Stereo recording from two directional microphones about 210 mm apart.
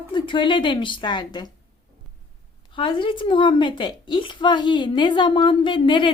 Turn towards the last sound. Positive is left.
turn(degrees=25)  # may be behind; listen again after turning